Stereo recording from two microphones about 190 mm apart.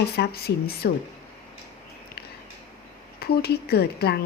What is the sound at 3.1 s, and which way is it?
A woman's voice, 55° left (ahead or behind).